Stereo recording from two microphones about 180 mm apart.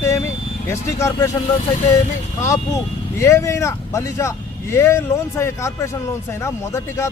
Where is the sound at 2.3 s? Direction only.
15° left (ahead or behind).